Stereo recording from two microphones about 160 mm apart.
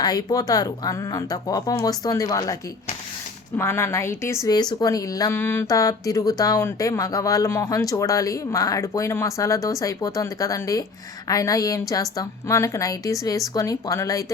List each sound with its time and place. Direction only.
0.0 s a woman's voice: 25° left (ahead or behind)
3.6 s a woman's voice: 15° left (ahead or behind)